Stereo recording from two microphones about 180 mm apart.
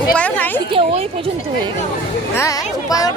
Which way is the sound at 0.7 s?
30° right (ahead or behind).